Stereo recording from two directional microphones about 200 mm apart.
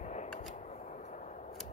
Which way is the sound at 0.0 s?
35° left (ahead or behind).